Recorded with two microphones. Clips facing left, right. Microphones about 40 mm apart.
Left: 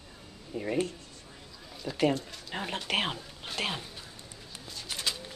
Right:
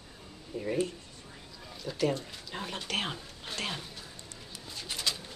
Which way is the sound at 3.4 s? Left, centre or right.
Left.